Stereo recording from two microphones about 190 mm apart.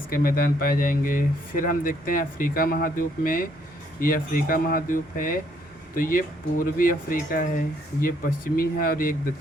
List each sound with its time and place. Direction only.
0.1 s speech: 50° left (ahead or behind)